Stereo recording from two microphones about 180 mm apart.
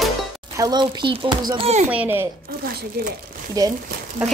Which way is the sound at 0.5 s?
20° right (ahead or behind).